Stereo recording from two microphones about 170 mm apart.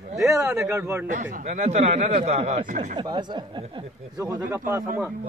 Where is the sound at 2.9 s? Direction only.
25° right (ahead or behind).